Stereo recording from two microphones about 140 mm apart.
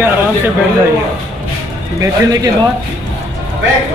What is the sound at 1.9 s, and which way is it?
Speech, 25° right (ahead or behind).